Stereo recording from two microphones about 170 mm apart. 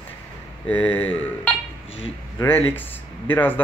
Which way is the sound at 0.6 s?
10° left (ahead or behind).